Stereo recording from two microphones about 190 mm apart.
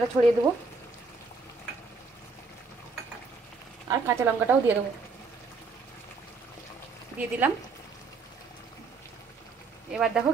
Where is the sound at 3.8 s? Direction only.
15° right (ahead or behind).